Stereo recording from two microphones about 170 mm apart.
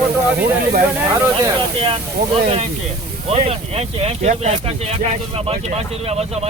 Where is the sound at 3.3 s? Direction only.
35° right (ahead or behind).